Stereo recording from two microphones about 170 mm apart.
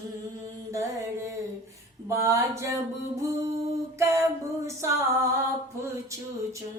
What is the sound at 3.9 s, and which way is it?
Mantra, 15° right (ahead or behind).